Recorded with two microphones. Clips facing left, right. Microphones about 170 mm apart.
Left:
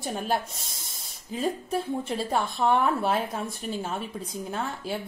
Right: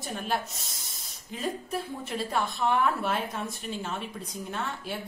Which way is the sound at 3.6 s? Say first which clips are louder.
Left 3 dB; 45° left (ahead or behind).